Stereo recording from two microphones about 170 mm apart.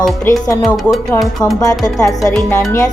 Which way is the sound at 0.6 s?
Centre (ahead or behind).